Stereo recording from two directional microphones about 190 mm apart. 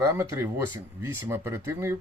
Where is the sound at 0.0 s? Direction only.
15° right (ahead or behind).